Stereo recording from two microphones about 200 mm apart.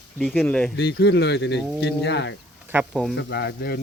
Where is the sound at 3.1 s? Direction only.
55° left (ahead or behind).